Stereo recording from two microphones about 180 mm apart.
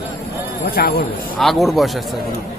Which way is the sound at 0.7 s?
55° left (ahead or behind).